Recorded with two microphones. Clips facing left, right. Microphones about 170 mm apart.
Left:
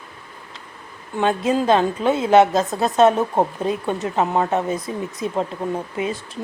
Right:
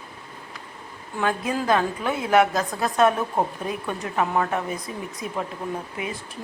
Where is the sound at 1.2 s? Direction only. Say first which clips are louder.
Left 6 dB; 25° left (ahead or behind).